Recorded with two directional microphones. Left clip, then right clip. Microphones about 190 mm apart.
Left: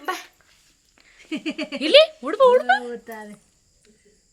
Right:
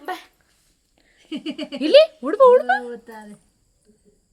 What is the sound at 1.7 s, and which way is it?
Speech, 30° right (ahead or behind).